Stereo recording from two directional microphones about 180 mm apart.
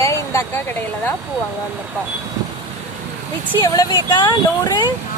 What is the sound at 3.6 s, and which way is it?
Speech, 20° left (ahead or behind).